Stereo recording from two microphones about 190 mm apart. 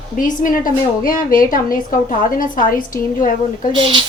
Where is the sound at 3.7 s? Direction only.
25° right (ahead or behind).